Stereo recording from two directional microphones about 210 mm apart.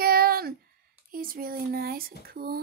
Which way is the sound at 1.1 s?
45° right (ahead or behind).